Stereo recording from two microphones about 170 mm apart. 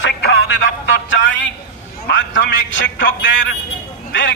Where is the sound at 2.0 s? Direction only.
90° left.